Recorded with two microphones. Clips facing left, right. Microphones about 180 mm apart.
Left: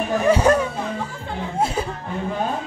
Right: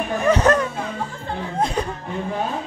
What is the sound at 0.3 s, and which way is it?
Speech, 10° left (ahead or behind).